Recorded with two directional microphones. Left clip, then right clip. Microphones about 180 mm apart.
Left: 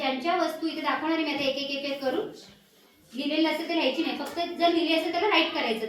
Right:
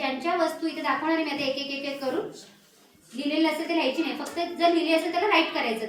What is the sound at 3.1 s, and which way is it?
A woman's voice, 5° right (ahead or behind).